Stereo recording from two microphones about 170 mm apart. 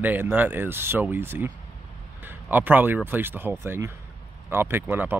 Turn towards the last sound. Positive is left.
turn(degrees=-10)  # may be behind; listen again after turning